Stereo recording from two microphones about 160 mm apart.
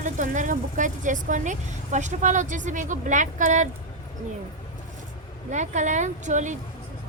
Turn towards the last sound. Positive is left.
turn(degrees=-50)  # may be behind; listen again after turning